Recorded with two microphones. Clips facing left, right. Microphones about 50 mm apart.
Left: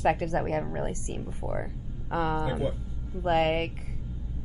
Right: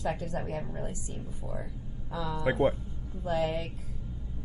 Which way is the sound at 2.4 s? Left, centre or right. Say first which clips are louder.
Right 3 dB; right.